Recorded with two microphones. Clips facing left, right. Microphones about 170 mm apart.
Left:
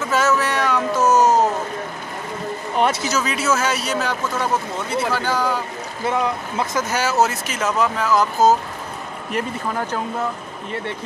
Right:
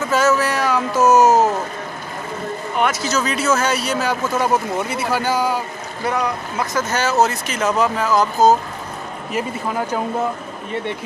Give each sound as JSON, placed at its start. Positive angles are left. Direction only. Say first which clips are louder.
{"t": 0.1, "sound": "a sound", "louder": "right 2 dB", "side_deg": 0}
{"t": 3.0, "sound": "speech", "louder": "right 2 dB", "side_deg": 10}
{"t": 6.0, "sound": "speech", "louder": "even", "side_deg": 25}
{"t": 6.9, "sound": "speech", "louder": "right 2 dB", "side_deg": 10}
{"t": 9.3, "sound": "speech", "louder": "right 1 dB", "side_deg": -10}